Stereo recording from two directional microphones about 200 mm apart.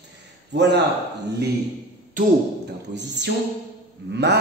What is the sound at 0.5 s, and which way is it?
Speech, 60° right (ahead or behind).